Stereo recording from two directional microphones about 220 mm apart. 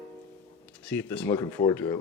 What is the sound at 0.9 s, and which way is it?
Speech, 10° left (ahead or behind).